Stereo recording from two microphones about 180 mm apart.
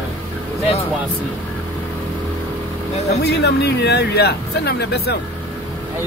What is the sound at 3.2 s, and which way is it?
Speech, 65° left (ahead or behind).